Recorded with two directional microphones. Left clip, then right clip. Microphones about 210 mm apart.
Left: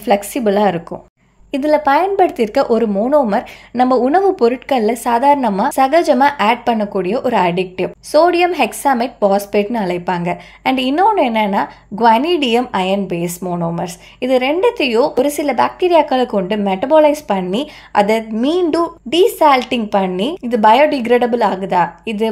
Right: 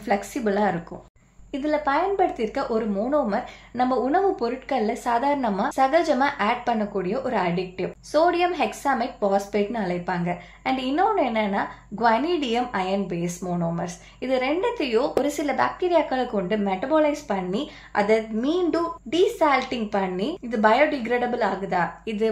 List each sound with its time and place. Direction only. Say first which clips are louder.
0.0 s a woman's voice: left 10 dB; 35° left (ahead or behind)